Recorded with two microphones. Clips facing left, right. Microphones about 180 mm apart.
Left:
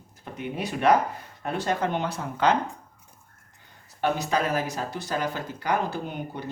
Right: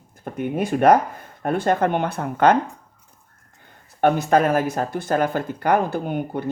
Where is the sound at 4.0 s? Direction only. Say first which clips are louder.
Right 8 dB; 55° right (ahead or behind).